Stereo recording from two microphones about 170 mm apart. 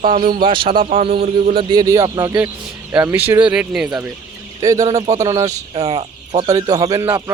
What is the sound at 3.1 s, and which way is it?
Speech, 10° right (ahead or behind).